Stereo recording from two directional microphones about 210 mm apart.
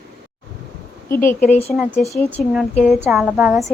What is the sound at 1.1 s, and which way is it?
Speech, 10° left (ahead or behind).